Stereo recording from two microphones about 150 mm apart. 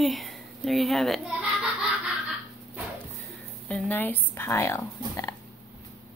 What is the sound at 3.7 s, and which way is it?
Speech, 10° left (ahead or behind).